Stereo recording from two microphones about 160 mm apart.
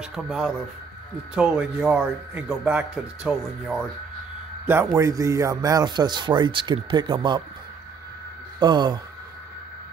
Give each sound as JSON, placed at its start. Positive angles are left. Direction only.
{"t": 0.0, "sound": "a man's voice", "side_deg": -5}
{"t": 8.5, "sound": "speech", "side_deg": -25}